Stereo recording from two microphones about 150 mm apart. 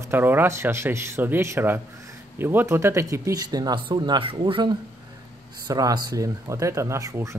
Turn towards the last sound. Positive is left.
turn(degrees=-20)  # may be behind; listen again after turning